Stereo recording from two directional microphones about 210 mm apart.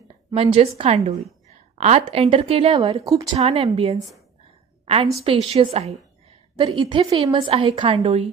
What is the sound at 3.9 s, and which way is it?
Speech, centre (ahead or behind).